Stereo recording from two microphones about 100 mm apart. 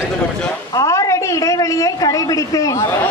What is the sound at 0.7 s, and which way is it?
A woman's voice, 30° left (ahead or behind).